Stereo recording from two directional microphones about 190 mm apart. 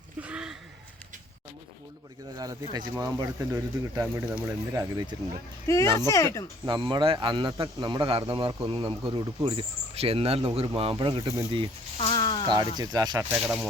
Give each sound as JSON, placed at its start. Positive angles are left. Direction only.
{"t": 0.2, "sound": "a sound", "side_deg": -5}
{"t": 2.3, "sound": "a man's voice", "side_deg": -20}
{"t": 5.6, "sound": "speech", "side_deg": 15}
{"t": 6.7, "sound": "a man's voice", "side_deg": -25}
{"t": 11.9, "sound": "a sound", "side_deg": 25}
{"t": 12.5, "sound": "a man's voice", "side_deg": -20}
{"t": 13.3, "sound": "speech", "side_deg": -5}